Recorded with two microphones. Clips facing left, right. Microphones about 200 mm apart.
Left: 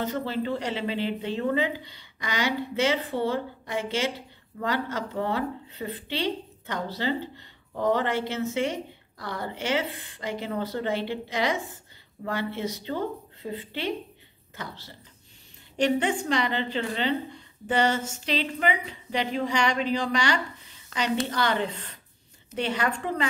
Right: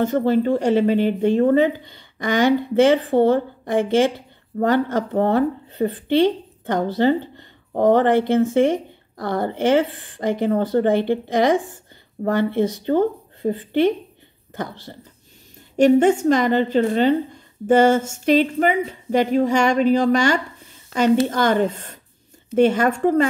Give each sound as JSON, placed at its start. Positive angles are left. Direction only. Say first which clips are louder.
{"t": 0.0, "sound": "a woman's voice", "louder": "right 11 dB", "side_deg": -50}